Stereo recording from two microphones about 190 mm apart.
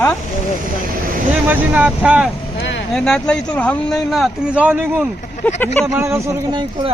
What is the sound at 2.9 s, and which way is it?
Speech, 5° left (ahead or behind).